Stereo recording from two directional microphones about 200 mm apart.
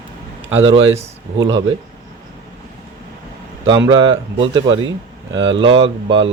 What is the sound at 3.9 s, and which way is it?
A man's voice, 20° right (ahead or behind).